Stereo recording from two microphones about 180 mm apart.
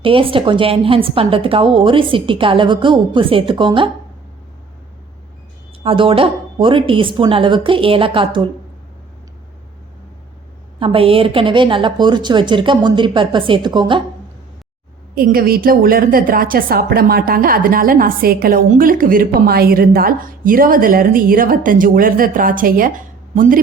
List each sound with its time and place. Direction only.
0.0 s a woman's voice: 30° right (ahead or behind)
5.8 s a woman's voice: 30° right (ahead or behind)
10.8 s a woman's voice: 30° right (ahead or behind)
15.1 s a woman's voice: 55° right (ahead or behind)